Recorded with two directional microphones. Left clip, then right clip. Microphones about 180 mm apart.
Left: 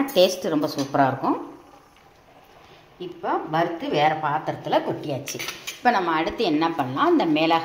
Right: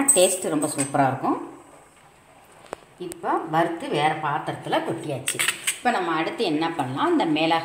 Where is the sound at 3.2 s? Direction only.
Centre (ahead or behind).